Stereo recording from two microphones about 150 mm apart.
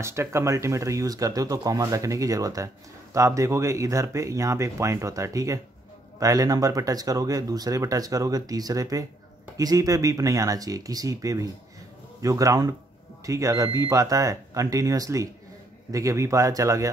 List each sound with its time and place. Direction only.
0.0 s speech: 15° right (ahead or behind)